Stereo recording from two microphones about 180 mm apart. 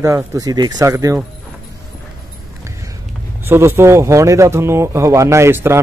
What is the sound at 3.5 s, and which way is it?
Speech, 15° right (ahead or behind).